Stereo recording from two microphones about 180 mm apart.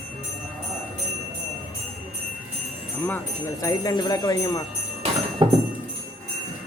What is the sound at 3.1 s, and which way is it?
Speech, 15° left (ahead or behind).